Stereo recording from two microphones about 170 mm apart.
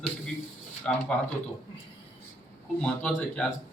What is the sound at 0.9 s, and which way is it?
Speech, 5° left (ahead or behind).